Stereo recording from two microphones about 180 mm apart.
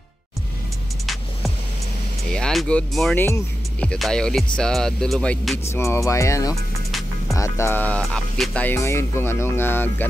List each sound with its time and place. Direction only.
2.3 s speech: 5° left (ahead or behind)
5.7 s speech: 15° left (ahead or behind)